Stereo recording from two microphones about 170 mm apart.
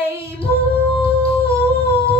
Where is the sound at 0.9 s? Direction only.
35° left (ahead or behind).